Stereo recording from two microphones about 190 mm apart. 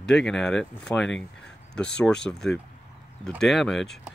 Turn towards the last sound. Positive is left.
turn(degrees=0)  # may be behind; listen again after turning